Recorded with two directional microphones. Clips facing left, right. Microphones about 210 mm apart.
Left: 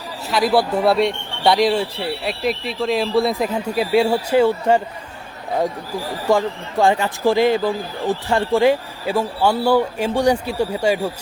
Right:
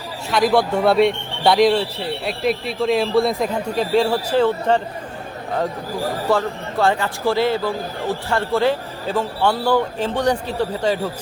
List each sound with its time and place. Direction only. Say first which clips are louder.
0.3 s a man's voice: even; centre (ahead or behind)
6.3 s a man's voice: left 4 dB; 15° left (ahead or behind)